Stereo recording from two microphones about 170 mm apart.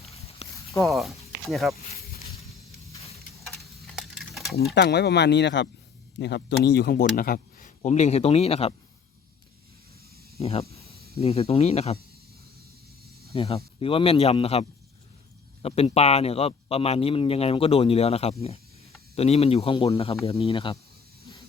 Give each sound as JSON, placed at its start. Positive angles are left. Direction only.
{"t": 0.0, "sound": "a sound", "side_deg": 35}
{"t": 0.8, "sound": "speech", "side_deg": 0}
{"t": 3.6, "sound": "a sound", "side_deg": 0}
{"t": 4.7, "sound": "speech", "side_deg": 80}
{"t": 7.8, "sound": "speech", "side_deg": 40}
{"t": 10.4, "sound": "speech", "side_deg": 35}
{"t": 13.3, "sound": "speech", "side_deg": 35}